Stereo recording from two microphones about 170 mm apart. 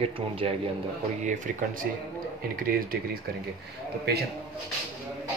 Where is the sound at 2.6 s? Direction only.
55° right (ahead or behind).